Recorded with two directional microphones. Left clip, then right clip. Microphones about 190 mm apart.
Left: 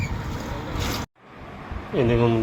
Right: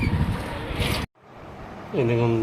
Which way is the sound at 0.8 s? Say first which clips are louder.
Right 2 dB; 65° left (ahead or behind).